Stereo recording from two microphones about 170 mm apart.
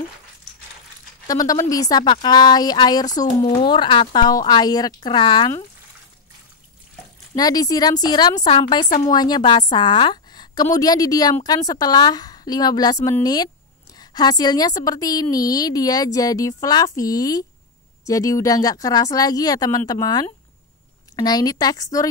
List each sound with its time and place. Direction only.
1.2 s speech: 20° left (ahead or behind)
7.3 s speech: 20° left (ahead or behind)
8.8 s a woman's voice: 45° left (ahead or behind)
9.1 s speech: 25° left (ahead or behind)